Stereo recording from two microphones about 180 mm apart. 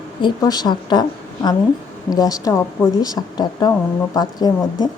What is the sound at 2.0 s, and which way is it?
Speech, 20° left (ahead or behind).